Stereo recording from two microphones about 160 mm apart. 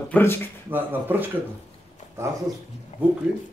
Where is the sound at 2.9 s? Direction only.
45° left (ahead or behind).